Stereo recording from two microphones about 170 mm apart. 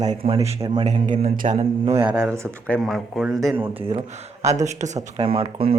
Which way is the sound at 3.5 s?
15° right (ahead or behind).